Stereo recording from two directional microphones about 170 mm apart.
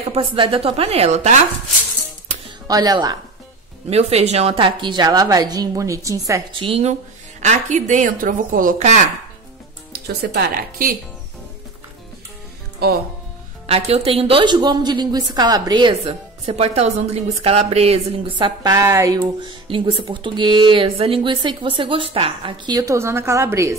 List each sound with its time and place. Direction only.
0.1 s a woman's voice: 30° right (ahead or behind)
2.4 s speech: 20° right (ahead or behind)
3.9 s a woman's voice: 40° right (ahead or behind); by 6.6 s 20° right (ahead or behind)
6.6 s a woman's voice: 35° right (ahead or behind)
10.0 s speech: 65° right (ahead or behind)
12.8 s speech: 70° right (ahead or behind)
13.7 s a woman's voice: 35° right (ahead or behind); by 23.7 s 15° right (ahead or behind)